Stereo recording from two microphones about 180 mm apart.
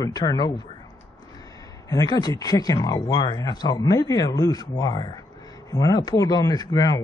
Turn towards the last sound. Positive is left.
turn(degrees=20)  # may be behind; listen again after turning